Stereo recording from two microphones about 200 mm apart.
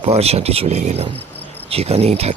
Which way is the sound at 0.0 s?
30° right (ahead or behind).